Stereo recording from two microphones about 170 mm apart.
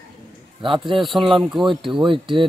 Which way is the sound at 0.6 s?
30° right (ahead or behind).